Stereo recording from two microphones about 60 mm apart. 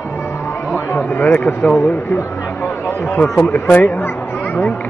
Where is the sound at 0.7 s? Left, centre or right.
Left.